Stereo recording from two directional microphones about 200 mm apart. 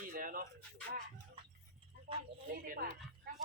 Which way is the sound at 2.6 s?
45° right (ahead or behind).